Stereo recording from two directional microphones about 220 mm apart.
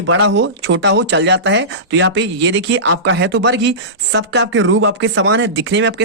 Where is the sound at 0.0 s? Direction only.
60° right (ahead or behind).